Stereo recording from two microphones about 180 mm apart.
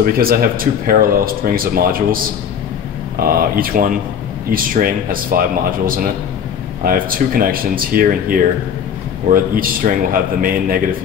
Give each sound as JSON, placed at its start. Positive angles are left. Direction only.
{"t": 0.0, "sound": "speech", "side_deg": -55}
{"t": 3.2, "sound": "speech", "side_deg": -55}